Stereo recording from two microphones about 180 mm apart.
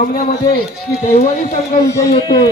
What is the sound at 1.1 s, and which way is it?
Speech, 35° left (ahead or behind).